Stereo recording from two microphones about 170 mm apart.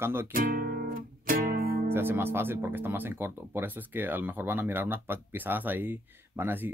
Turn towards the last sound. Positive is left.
turn(degrees=-10)  # may be behind; listen again after turning